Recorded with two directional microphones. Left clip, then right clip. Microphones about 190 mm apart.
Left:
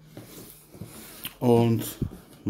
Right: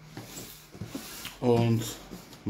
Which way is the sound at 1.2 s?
45° left (ahead or behind).